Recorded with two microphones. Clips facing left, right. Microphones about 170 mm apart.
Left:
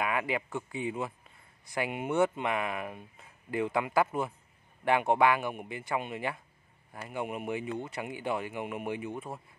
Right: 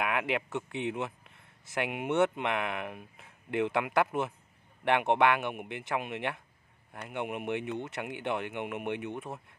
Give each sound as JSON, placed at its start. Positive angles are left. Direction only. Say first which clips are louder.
{"t": 0.0, "sound": "speech", "louder": "even", "side_deg": 0}
{"t": 0.7, "sound": "speech", "louder": "right 1 dB", "side_deg": -75}
{"t": 1.3, "sound": "speech", "louder": "even", "side_deg": 0}